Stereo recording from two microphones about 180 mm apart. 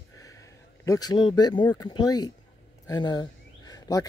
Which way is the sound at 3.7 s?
20° left (ahead or behind).